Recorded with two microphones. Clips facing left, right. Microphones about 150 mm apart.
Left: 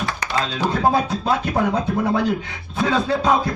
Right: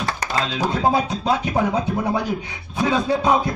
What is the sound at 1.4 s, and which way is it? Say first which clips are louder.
Speech: even; 15° right (ahead or behind).